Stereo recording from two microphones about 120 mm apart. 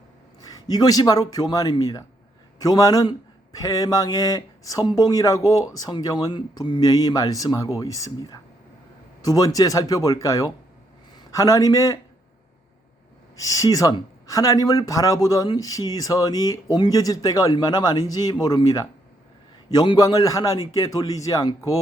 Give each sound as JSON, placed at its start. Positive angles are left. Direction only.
{"t": 0.4, "sound": "a man's voice", "side_deg": 30}
{"t": 13.4, "sound": "speech", "side_deg": 30}